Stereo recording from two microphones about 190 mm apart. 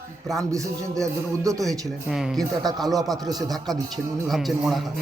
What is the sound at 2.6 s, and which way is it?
Speech, 20° right (ahead or behind).